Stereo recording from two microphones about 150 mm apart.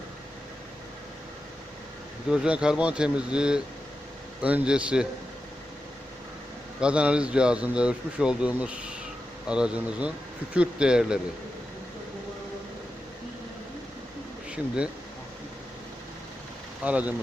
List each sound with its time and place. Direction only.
2.3 s speech: 5° right (ahead or behind)
6.7 s speech: 5° right (ahead or behind)
16.8 s speech: 10° right (ahead or behind)